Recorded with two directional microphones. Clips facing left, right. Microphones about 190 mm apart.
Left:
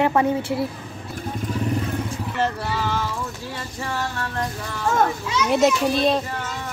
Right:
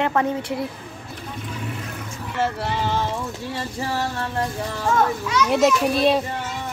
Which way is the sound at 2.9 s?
20° right (ahead or behind).